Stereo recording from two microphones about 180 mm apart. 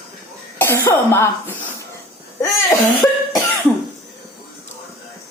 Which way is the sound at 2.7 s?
20° left (ahead or behind).